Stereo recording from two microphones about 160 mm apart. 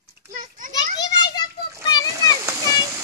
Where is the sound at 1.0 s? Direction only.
25° left (ahead or behind).